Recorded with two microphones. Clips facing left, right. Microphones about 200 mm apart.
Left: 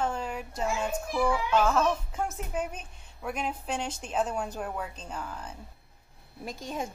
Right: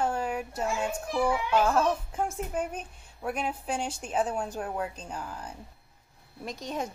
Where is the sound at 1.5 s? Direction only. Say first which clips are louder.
Right 1 dB; 10° right (ahead or behind).